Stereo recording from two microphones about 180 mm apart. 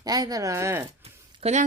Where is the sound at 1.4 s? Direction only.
40° right (ahead or behind).